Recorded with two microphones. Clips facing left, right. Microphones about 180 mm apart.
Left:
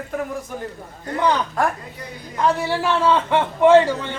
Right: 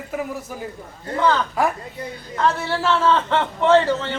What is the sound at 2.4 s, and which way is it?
A man's voice, 15° left (ahead or behind).